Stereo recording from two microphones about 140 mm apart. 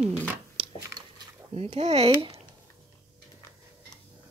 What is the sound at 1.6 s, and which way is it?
Speech, 50° right (ahead or behind).